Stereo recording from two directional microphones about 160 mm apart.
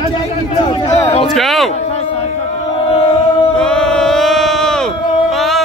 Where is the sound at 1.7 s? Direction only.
40° left (ahead or behind).